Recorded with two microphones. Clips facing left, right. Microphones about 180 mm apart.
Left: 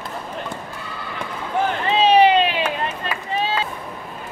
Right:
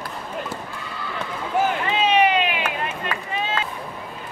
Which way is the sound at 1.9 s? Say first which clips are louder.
Left 7 dB; 30° left (ahead or behind).